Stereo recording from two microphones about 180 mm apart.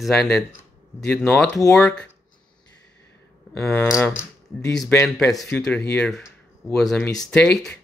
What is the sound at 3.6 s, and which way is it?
Speech, 10° left (ahead or behind).